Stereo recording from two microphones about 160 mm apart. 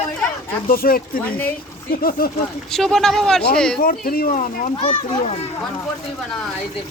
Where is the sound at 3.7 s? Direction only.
65° left (ahead or behind).